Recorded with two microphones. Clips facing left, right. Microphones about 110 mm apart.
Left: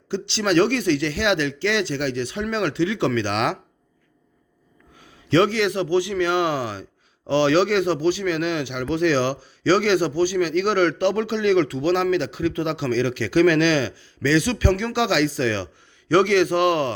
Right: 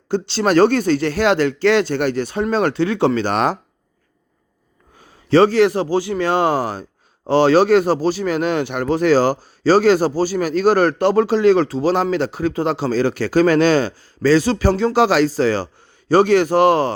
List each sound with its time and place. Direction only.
0.1 s speech: 45° right (ahead or behind)
4.9 s a man's voice: 40° right (ahead or behind)